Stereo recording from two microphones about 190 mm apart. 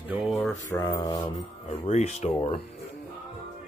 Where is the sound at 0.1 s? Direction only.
5° right (ahead or behind).